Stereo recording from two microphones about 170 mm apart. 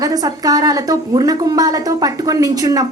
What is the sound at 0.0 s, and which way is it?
A woman's voice, 20° right (ahead or behind).